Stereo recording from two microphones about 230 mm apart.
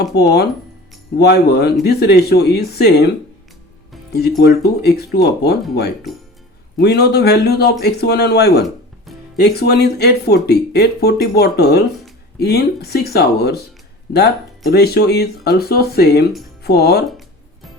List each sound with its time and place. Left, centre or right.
0.2 s speech: left
4.4 s speech: left
6.8 s speech: left
17.1 s music: centre